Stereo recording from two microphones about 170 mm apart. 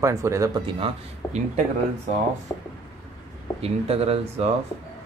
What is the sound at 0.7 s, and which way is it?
Speech, 35° right (ahead or behind).